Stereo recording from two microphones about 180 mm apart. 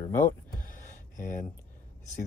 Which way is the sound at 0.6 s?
45° left (ahead or behind).